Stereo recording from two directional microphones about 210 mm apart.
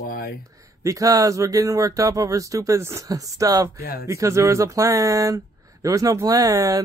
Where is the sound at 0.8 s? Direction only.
15° right (ahead or behind).